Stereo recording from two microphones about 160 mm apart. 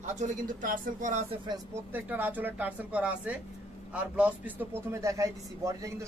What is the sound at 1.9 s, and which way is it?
Speech, 10° right (ahead or behind).